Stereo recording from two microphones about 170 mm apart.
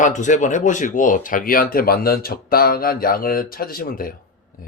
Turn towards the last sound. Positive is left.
turn(degrees=60)  # may be behind; listen again after turning